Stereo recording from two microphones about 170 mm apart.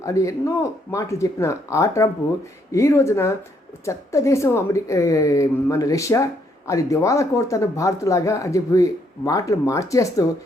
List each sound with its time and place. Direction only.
0.0 s a woman's voice: 20° left (ahead or behind)